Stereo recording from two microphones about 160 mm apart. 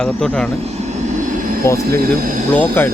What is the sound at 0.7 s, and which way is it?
Vehicle, 45° right (ahead or behind).